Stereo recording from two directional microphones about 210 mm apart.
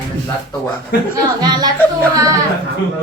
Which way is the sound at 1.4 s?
20° right (ahead or behind).